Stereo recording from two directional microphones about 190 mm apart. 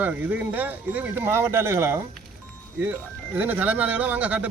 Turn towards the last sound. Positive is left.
turn(degrees=-10)  # may be behind; listen again after turning